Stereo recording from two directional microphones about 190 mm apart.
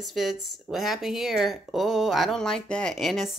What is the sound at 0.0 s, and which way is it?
Speech, centre (ahead or behind).